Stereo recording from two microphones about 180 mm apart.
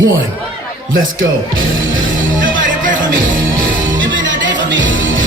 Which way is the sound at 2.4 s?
50° right (ahead or behind).